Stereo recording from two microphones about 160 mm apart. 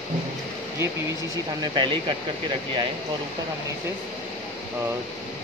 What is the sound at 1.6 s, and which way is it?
Speech, 30° right (ahead or behind).